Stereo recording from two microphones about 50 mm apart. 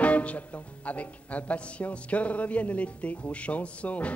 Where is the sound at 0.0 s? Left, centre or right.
Left.